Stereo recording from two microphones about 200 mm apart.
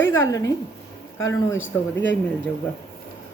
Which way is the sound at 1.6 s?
70° left (ahead or behind).